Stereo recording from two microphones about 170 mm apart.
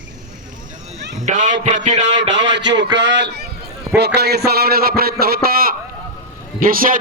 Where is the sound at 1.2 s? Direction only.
45° right (ahead or behind).